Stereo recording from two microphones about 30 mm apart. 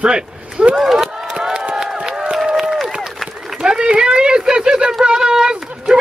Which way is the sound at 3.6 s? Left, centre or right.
Right.